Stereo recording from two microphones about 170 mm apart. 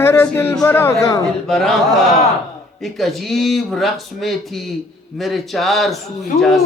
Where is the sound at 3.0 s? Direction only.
Centre (ahead or behind).